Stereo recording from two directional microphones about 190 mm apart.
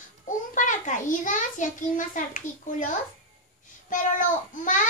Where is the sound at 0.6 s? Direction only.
40° left (ahead or behind).